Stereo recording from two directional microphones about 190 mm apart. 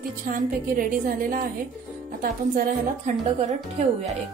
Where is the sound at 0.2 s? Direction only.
45° right (ahead or behind).